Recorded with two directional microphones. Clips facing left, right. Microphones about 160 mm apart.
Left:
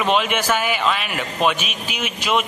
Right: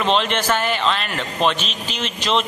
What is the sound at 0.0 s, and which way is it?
A man's voice, 10° left (ahead or behind).